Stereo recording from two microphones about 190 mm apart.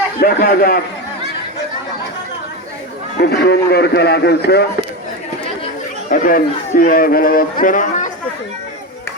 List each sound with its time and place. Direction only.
0.2 s a man's voice: 50° left (ahead or behind)
3.2 s a man's voice: 60° left (ahead or behind)
6.1 s a man's voice: 45° left (ahead or behind)